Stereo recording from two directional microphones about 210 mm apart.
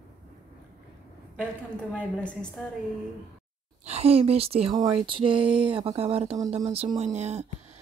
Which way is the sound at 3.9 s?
30° right (ahead or behind).